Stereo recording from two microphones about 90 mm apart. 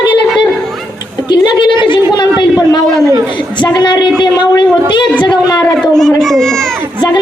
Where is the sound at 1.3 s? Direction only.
60° left (ahead or behind).